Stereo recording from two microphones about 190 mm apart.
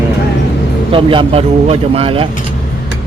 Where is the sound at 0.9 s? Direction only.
30° right (ahead or behind).